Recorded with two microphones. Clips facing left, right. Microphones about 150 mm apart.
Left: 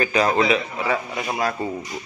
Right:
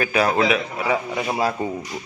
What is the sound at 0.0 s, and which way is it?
A man's voice, 5° right (ahead or behind).